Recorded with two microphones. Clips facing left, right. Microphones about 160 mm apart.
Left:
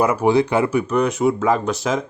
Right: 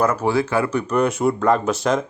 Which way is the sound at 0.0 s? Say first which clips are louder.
Left 3 dB; 10° left (ahead or behind).